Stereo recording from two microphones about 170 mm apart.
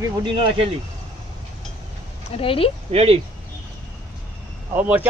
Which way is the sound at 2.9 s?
35° right (ahead or behind).